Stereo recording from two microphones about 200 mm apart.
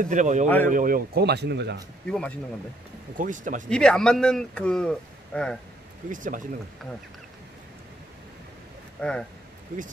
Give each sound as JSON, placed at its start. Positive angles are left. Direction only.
{"t": 0.0, "sound": "speech", "side_deg": -40}
{"t": 2.0, "sound": "speech", "side_deg": 5}
{"t": 3.2, "sound": "speech", "side_deg": -40}
{"t": 3.6, "sound": "speech", "side_deg": 5}
{"t": 6.0, "sound": "speech", "side_deg": -40}
{"t": 9.0, "sound": "speech", "side_deg": 5}